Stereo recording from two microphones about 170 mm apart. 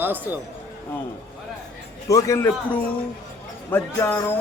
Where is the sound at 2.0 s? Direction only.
20° left (ahead or behind).